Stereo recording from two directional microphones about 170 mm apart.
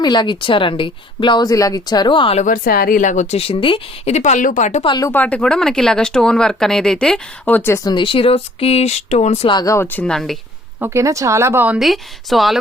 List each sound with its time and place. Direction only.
0.0 s a woman's voice: 25° left (ahead or behind)
2.4 s a woman's voice: 55° left (ahead or behind)
4.9 s a woman's voice: 20° left (ahead or behind)
5.1 s speech: 10° left (ahead or behind)
7.9 s speech: 30° left (ahead or behind)
9.5 s speech: 20° left (ahead or behind); by 10.3 s centre (ahead or behind)
10.8 s speech: 15° right (ahead or behind); by 12.5 s centre (ahead or behind)